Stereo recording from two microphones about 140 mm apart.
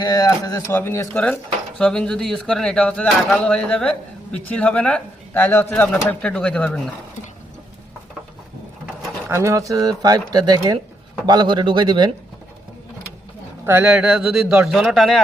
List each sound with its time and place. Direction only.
0.0 s speech: 25° left (ahead or behind); by 6.9 s 5° left (ahead or behind)
9.3 s speech: 20° right (ahead or behind)
13.7 s a man's voice: 15° right (ahead or behind); by 15.2 s centre (ahead or behind)